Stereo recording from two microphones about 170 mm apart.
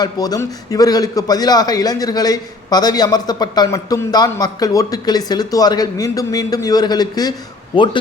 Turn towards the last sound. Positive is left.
turn(degrees=30)  # may be behind; listen again after turning